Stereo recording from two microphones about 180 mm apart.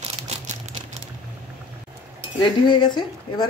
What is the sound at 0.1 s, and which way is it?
Crumpling, 40° right (ahead or behind).